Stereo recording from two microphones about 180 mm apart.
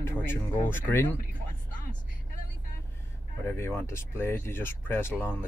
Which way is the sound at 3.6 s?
15° left (ahead or behind).